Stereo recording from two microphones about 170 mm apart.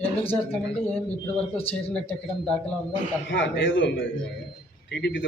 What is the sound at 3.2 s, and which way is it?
Speech, 90° left.